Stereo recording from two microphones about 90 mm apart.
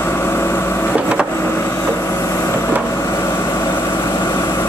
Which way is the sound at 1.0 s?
15° right (ahead or behind).